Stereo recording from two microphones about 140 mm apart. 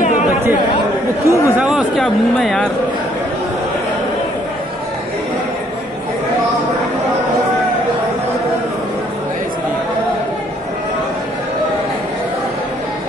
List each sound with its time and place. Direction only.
1.2 s speech: 20° left (ahead or behind)
1.6 s speech: 5° right (ahead or behind)